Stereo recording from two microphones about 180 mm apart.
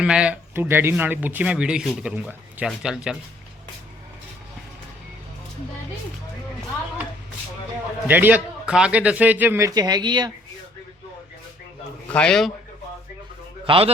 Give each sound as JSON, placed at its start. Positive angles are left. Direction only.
{"t": 0.0, "sound": "speech", "side_deg": -5}
{"t": 8.0, "sound": "a man's voice", "side_deg": -10}
{"t": 12.1, "sound": "speech", "side_deg": 5}
{"t": 13.7, "sound": "a man's voice", "side_deg": -30}